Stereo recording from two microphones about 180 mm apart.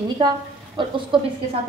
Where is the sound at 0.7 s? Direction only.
25° right (ahead or behind).